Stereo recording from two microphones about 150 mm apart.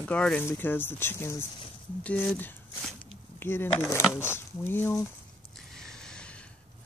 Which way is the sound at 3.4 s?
15° left (ahead or behind).